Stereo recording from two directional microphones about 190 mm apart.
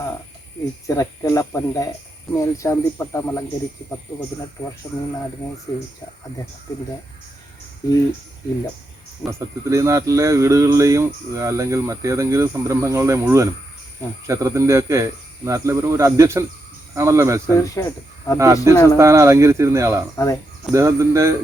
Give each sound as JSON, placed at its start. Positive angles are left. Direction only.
{"t": 0.9, "sound": "speech", "side_deg": 15}
{"t": 5.7, "sound": "speech", "side_deg": 20}
{"t": 9.6, "sound": "speech", "side_deg": -15}
{"t": 17.4, "sound": "speech", "side_deg": 15}
{"t": 18.3, "sound": "speech", "side_deg": -15}
{"t": 20.1, "sound": "speech", "side_deg": 15}
{"t": 20.7, "sound": "speech", "side_deg": -15}